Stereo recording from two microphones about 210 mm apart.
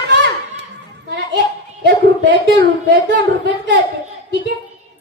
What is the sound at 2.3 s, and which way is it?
Child singing, 60° right (ahead or behind).